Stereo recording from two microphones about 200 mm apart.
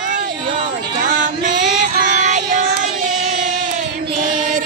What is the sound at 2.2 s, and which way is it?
Child singing, 35° right (ahead or behind).